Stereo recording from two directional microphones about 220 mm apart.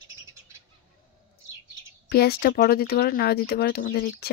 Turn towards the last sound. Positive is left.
turn(degrees=40)  # may be behind; listen again after turning